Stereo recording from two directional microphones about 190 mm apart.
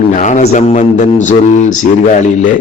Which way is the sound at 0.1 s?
40° left (ahead or behind).